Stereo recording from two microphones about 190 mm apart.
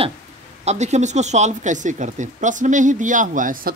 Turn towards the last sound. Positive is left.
turn(degrees=-45)  # may be behind; listen again after turning